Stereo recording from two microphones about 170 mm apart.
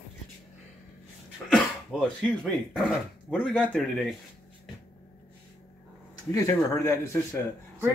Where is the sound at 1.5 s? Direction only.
5° left (ahead or behind).